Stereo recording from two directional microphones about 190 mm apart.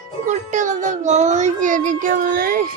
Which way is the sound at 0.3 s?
40° right (ahead or behind).